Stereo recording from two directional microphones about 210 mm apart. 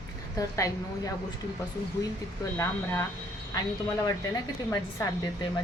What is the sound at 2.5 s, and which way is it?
Speech, 10° left (ahead or behind).